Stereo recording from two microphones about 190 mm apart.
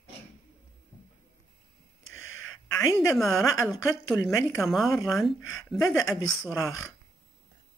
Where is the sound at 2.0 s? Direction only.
90° left.